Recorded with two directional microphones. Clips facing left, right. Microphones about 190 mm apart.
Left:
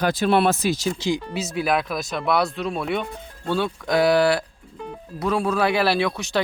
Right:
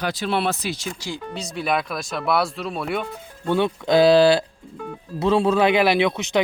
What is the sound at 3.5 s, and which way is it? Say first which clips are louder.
Speech: right 4 dB; 20° right (ahead or behind).